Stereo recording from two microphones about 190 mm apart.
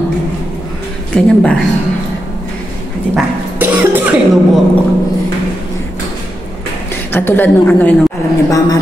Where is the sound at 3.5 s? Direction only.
10° right (ahead or behind).